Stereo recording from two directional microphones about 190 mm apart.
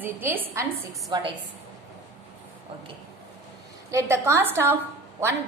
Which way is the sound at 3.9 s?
15° right (ahead or behind).